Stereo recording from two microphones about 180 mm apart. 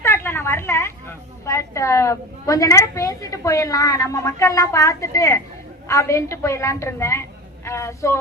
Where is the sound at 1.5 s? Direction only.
15° left (ahead or behind).